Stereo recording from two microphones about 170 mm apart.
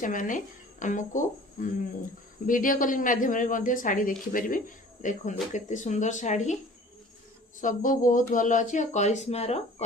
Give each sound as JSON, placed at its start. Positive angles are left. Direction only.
{"t": 0.0, "sound": "speech", "side_deg": 50}
{"t": 7.6, "sound": "speech", "side_deg": 50}